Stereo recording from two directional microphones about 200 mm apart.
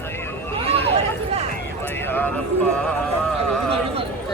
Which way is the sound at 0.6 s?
30° right (ahead or behind).